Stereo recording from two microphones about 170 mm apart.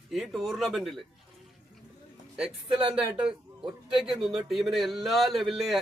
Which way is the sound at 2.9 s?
5° right (ahead or behind).